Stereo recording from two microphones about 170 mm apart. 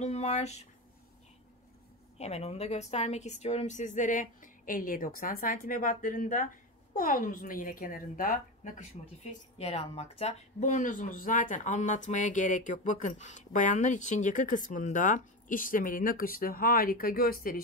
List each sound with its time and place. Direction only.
0.0 s speech: 40° left (ahead or behind)
2.1 s speech: 40° left (ahead or behind); by 17.6 s 60° left (ahead or behind)